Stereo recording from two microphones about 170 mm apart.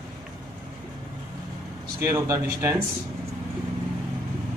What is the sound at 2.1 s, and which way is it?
Speech, 15° right (ahead or behind).